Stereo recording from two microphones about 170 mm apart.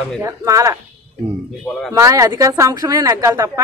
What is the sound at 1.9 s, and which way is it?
Speech, 15° right (ahead or behind).